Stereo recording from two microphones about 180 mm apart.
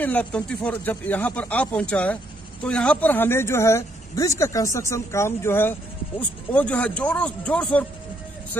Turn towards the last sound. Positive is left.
turn(degrees=5)  # may be behind; listen again after turning